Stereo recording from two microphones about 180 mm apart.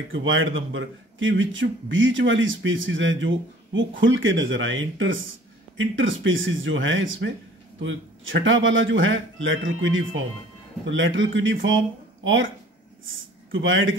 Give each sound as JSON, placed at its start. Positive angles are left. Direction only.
{"t": 0.1, "sound": "speech", "side_deg": -90}